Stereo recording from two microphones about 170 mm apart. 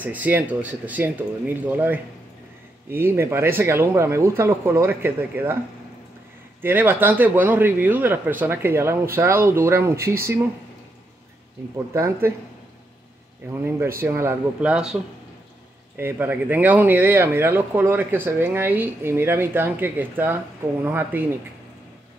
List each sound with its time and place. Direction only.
0.0 s speech: 10° right (ahead or behind)
6.6 s speech: 10° right (ahead or behind)
11.7 s speech: 15° right (ahead or behind)
13.5 s speech: 10° right (ahead or behind)
16.0 s speech: 10° right (ahead or behind)